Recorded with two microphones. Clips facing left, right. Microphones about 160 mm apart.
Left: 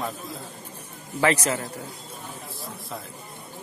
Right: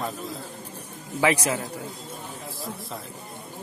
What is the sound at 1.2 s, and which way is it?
Speech, 10° right (ahead or behind).